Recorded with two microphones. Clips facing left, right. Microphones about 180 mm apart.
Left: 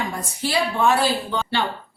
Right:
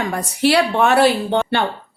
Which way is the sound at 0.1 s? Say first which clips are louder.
Right 8 dB; 70° right (ahead or behind).